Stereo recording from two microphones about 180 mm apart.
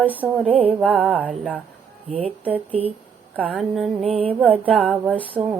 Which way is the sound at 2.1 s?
35° right (ahead or behind).